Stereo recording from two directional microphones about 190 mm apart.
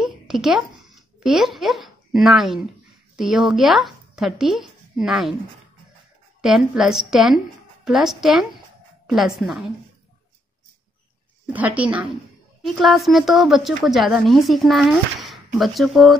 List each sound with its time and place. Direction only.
0.0 s a woman's voice: 5° right (ahead or behind)
6.4 s speech: centre (ahead or behind)
11.5 s speech: 10° right (ahead or behind)